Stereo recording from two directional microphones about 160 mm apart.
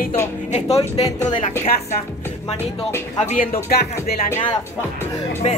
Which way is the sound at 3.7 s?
80° left.